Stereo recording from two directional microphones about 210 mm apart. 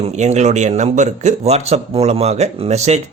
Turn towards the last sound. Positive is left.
turn(degrees=-30)  # may be behind; listen again after turning